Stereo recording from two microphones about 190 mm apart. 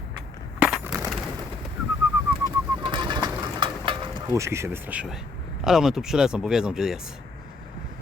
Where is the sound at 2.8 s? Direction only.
25° right (ahead or behind).